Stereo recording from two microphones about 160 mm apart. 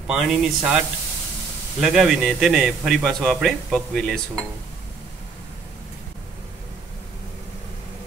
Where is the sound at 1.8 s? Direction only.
Centre (ahead or behind).